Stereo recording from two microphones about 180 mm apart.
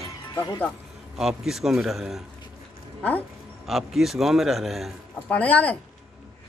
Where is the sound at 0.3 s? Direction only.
20° left (ahead or behind).